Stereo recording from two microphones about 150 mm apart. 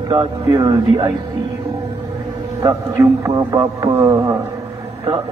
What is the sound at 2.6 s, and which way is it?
A man's voice, 20° right (ahead or behind).